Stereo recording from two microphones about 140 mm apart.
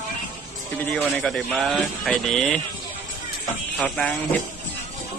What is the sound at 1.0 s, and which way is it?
Speech, 5° left (ahead or behind).